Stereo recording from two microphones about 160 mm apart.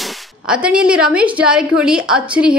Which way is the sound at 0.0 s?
5° right (ahead or behind).